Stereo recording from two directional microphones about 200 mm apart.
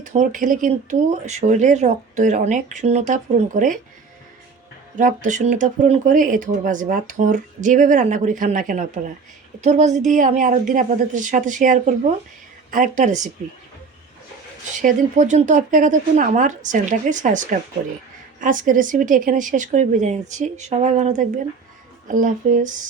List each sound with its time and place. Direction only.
0.0 s speech: 40° right (ahead or behind)
4.9 s speech: 40° right (ahead or behind)
14.8 s speech: 40° right (ahead or behind)